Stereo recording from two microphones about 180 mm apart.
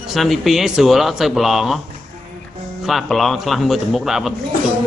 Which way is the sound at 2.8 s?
Centre (ahead or behind).